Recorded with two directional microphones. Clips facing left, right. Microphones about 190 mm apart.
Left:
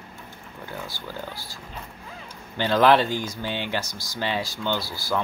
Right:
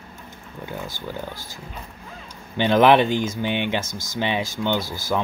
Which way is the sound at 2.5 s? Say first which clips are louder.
Right 3 dB; 20° right (ahead or behind).